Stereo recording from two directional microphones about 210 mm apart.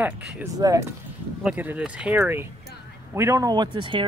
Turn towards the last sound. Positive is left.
turn(degrees=-20)  # may be behind; listen again after turning